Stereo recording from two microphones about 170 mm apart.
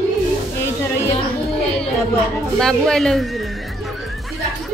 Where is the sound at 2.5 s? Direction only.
5° left (ahead or behind).